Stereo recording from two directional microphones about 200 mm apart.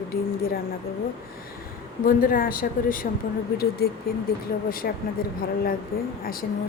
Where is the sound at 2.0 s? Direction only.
45° left (ahead or behind).